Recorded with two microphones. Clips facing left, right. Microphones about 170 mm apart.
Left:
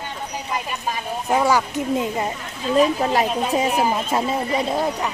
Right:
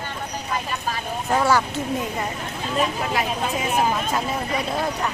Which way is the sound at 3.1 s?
35° left (ahead or behind).